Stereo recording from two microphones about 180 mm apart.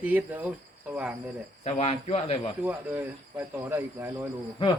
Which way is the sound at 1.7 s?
35° left (ahead or behind).